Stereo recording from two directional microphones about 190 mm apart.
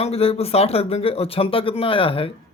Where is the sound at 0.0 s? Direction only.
30° left (ahead or behind).